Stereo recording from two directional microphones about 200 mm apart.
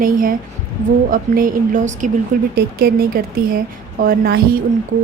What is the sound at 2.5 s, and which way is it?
Speech, 50° right (ahead or behind).